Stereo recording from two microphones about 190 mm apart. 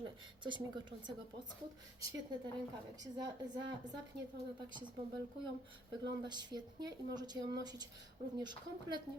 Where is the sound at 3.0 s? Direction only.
20° right (ahead or behind).